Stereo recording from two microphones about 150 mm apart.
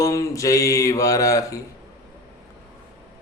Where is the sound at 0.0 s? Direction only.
20° left (ahead or behind).